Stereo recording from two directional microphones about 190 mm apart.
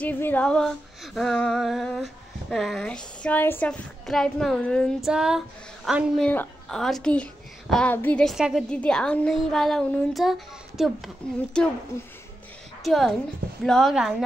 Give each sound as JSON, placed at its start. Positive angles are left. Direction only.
{"t": 0.0, "sound": "a woman's voice", "side_deg": 10}
{"t": 11.9, "sound": "speech", "side_deg": 15}
{"t": 12.8, "sound": "a woman's voice", "side_deg": 0}